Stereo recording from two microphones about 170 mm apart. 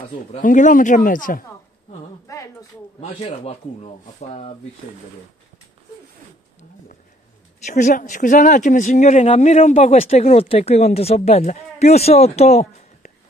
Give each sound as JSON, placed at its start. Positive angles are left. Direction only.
{"t": 0.3, "sound": "speech", "side_deg": 50}
{"t": 2.2, "sound": "a sound", "side_deg": 20}
{"t": 3.0, "sound": "speech", "side_deg": 35}
{"t": 7.6, "sound": "speech", "side_deg": 45}